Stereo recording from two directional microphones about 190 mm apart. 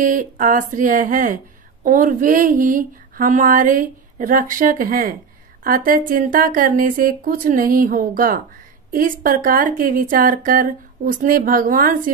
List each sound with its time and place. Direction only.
0.0 s speech: 45° right (ahead or behind)